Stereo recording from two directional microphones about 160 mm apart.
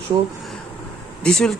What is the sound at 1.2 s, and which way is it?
Speech, 5° left (ahead or behind).